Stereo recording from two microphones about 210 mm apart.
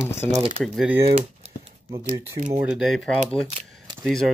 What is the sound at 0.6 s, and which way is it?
Speech, centre (ahead or behind).